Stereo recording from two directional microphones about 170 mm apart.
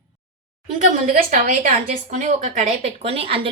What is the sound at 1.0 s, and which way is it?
A woman's voice, 45° right (ahead or behind).